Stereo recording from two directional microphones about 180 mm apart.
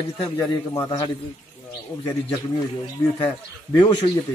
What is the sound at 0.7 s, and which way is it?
Speech, 20° left (ahead or behind).